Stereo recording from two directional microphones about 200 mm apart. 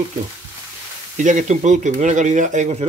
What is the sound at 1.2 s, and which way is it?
Speech, 40° right (ahead or behind).